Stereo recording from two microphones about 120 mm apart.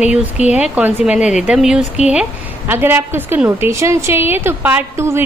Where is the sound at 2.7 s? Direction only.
20° right (ahead or behind).